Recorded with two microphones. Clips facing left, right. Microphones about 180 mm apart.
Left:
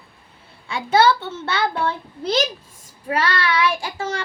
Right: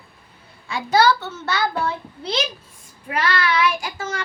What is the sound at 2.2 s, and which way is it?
Speech, 45° left (ahead or behind).